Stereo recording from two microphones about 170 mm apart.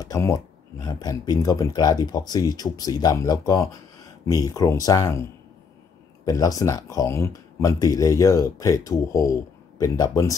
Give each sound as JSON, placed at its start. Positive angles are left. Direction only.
{"t": 0.0, "sound": "speech", "side_deg": 20}